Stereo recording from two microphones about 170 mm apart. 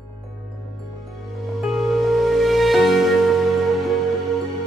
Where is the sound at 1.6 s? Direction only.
Centre (ahead or behind).